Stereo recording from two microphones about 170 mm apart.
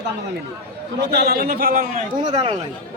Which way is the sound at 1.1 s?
65° right (ahead or behind).